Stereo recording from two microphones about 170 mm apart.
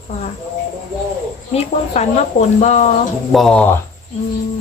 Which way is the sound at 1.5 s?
40° left (ahead or behind).